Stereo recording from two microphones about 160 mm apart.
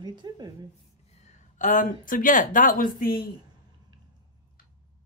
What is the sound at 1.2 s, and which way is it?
Speech, 50° left (ahead or behind).